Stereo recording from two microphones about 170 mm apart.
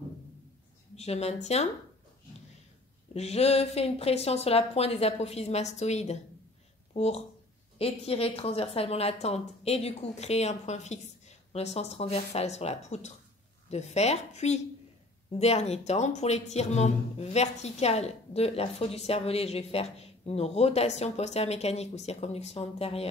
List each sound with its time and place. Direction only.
0.9 s speech: 40° left (ahead or behind)
3.1 s speech: 40° left (ahead or behind)
6.9 s a sound: 40° left (ahead or behind)
7.8 s speech: 35° left (ahead or behind)